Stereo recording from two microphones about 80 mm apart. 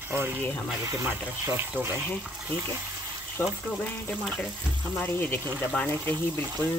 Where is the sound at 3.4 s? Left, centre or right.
Left.